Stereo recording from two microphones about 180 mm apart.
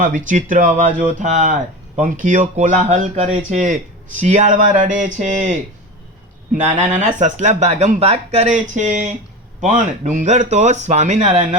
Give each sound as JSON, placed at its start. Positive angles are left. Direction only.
{"t": 0.0, "sound": "speech", "side_deg": -45}
{"t": 6.7, "sound": "speech", "side_deg": -40}